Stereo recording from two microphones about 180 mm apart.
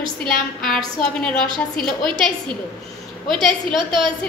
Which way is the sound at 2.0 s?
25° right (ahead or behind).